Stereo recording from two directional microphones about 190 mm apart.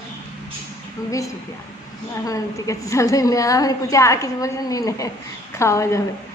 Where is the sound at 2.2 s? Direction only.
15° left (ahead or behind).